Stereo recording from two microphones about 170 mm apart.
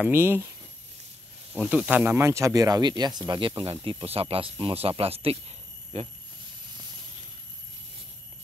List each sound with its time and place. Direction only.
0.0 s speech: 15° right (ahead or behind)
1.5 s speech: 5° right (ahead or behind); by 5.4 s 35° right (ahead or behind)